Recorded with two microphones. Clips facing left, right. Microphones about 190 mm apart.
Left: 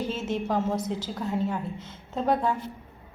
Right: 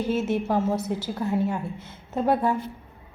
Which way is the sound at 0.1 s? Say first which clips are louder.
Right 4 dB; 10° right (ahead or behind).